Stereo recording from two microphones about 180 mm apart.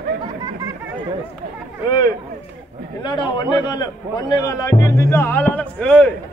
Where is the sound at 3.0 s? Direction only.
25° left (ahead or behind); by 6.1 s 5° left (ahead or behind).